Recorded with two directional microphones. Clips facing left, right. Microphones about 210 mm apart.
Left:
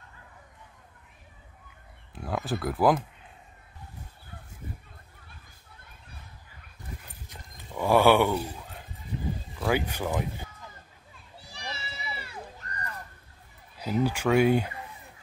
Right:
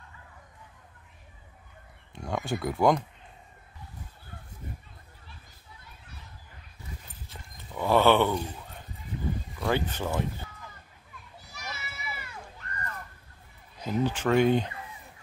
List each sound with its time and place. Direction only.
2.1 s speech: 5° left (ahead or behind)
7.2 s a sound: 10° left (ahead or behind)
9.6 s speech: 5° left (ahead or behind)
11.3 s children playing: 30° left (ahead or behind)
13.7 s speech: 10° left (ahead or behind)